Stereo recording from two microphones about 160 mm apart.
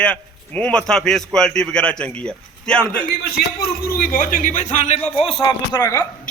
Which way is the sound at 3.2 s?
65° left (ahead or behind).